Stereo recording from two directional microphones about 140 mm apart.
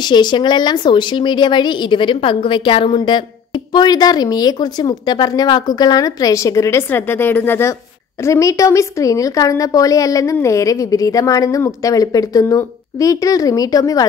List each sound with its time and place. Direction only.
0.0 s a woman's voice: 30° left (ahead or behind)